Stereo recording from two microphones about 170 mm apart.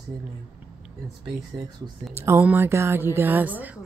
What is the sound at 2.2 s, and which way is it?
Speech, 10° right (ahead or behind).